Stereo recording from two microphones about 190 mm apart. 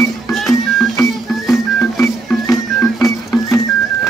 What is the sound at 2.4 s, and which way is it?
Music, 15° left (ahead or behind).